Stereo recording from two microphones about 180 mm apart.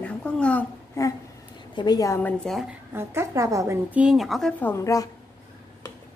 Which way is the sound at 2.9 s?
15° right (ahead or behind).